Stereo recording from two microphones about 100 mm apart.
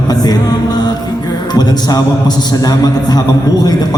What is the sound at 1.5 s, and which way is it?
A man's voice, 40° left (ahead or behind).